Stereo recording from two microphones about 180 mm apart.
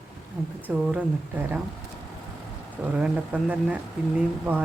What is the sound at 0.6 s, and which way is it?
Speech, 10° right (ahead or behind).